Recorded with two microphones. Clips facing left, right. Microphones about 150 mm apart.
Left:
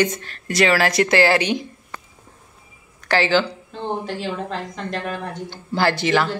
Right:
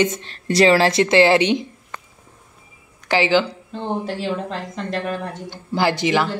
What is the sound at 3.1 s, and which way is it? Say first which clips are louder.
Speech: right 1 dB; 15° right (ahead or behind).